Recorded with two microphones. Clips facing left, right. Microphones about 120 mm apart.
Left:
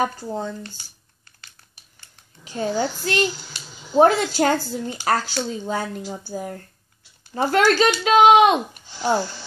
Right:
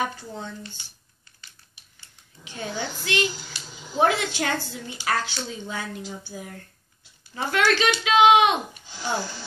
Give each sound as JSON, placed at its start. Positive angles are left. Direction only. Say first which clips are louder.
{"t": 0.0, "sound": "speech", "louder": "left 6 dB", "side_deg": 35}
{"t": 2.4, "sound": "speech", "louder": "left 8 dB", "side_deg": 35}